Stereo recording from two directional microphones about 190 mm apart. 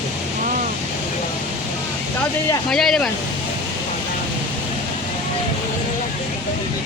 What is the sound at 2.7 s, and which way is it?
Speech, centre (ahead or behind).